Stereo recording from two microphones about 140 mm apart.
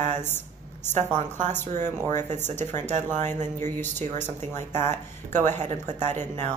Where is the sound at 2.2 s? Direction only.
55° right (ahead or behind).